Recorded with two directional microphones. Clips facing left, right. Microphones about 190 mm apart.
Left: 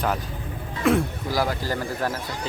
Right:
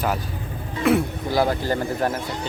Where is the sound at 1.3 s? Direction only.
25° right (ahead or behind).